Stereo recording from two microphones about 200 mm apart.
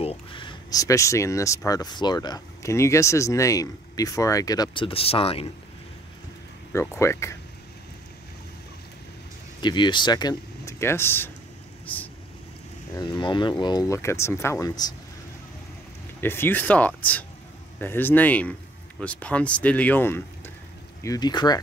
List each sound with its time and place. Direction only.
0.0 s speech: 25° left (ahead or behind)
6.7 s speech: 15° left (ahead or behind)
9.6 s speech: 25° left (ahead or behind)
11.8 s vehicle: 10° left (ahead or behind)
12.9 s speech: 20° left (ahead or behind)
16.2 s speech: 10° left (ahead or behind)